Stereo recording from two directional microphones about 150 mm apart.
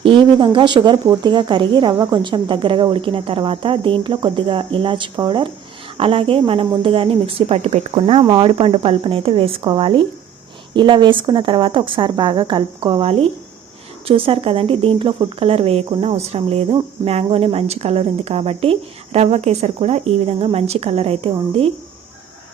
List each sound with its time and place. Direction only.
0.0 s speech: 35° right (ahead or behind)